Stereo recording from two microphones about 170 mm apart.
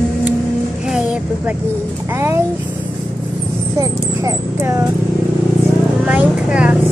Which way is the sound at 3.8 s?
20° right (ahead or behind).